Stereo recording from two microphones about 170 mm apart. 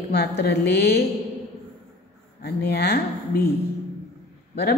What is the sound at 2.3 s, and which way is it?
Speech, 70° left (ahead or behind).